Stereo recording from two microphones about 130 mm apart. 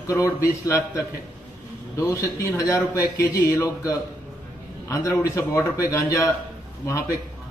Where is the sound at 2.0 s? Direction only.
25° left (ahead or behind).